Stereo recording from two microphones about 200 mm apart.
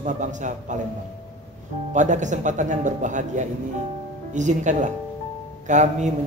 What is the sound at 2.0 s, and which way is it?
A man's voice, 40° right (ahead or behind).